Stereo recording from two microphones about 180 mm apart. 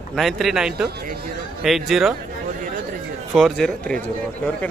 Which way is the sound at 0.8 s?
60° right (ahead or behind).